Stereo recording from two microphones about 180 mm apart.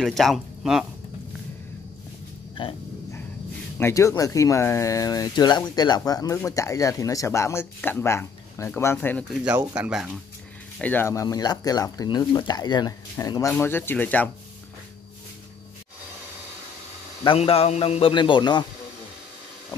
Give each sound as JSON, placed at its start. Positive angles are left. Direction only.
{"t": 0.0, "sound": "speech", "side_deg": 0}
{"t": 3.8, "sound": "speech", "side_deg": 15}
{"t": 9.3, "sound": "speech", "side_deg": -5}
{"t": 10.8, "sound": "speech", "side_deg": 10}
{"t": 17.2, "sound": "speech", "side_deg": 30}